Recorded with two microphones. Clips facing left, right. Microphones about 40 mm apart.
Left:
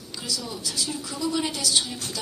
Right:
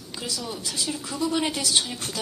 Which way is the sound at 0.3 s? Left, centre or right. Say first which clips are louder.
Left 1 dB; right.